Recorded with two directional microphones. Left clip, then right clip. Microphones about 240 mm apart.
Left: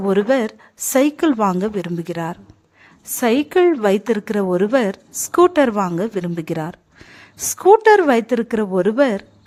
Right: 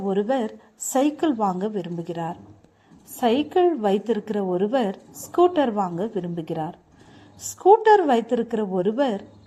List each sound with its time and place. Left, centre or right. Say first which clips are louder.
0.1 s a woman's voice: left 7 dB; left